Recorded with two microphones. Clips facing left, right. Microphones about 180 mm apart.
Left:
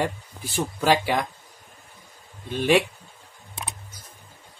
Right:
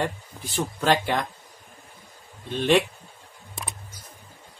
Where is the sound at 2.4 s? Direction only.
10° left (ahead or behind).